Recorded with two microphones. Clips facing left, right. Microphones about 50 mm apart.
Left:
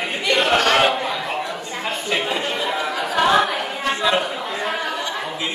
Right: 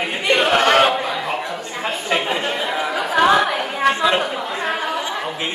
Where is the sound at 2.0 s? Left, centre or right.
Right.